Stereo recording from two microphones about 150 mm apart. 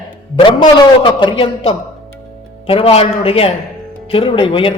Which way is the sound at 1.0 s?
30° left (ahead or behind).